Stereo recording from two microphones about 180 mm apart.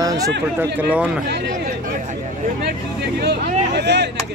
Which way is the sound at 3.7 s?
70° right (ahead or behind).